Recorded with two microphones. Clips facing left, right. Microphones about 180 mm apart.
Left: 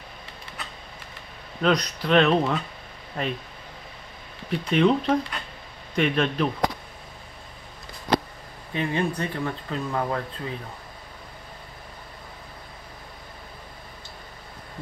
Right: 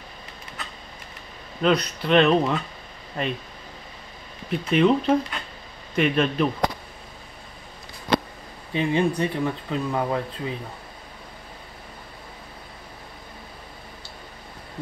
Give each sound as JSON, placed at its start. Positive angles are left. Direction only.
{"t": 1.6, "sound": "speech", "side_deg": -5}
{"t": 4.5, "sound": "speech", "side_deg": -5}
{"t": 8.7, "sound": "speech", "side_deg": -20}